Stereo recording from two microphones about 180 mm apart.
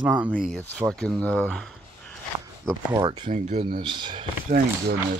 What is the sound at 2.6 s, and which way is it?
Speech, 20° right (ahead or behind).